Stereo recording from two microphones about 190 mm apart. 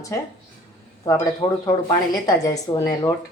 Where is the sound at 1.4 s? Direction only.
20° left (ahead or behind).